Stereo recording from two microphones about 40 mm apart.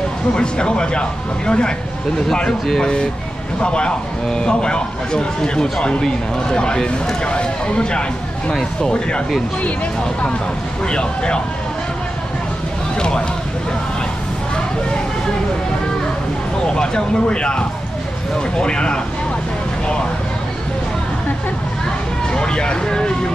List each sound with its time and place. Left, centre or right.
0.3 s speech: left
10.9 s speech: left
16.6 s speech: left
22.3 s speech: left